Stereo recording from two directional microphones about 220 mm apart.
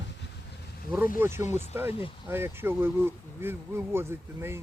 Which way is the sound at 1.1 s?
10° right (ahead or behind).